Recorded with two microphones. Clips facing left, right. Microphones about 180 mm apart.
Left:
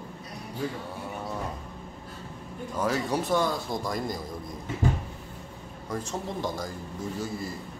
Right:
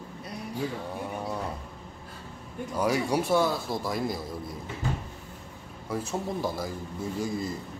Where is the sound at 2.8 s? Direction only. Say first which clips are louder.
Right 2 dB; 10° right (ahead or behind).